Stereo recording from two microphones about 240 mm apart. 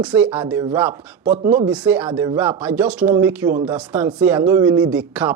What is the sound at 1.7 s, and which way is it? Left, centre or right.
Speech, centre.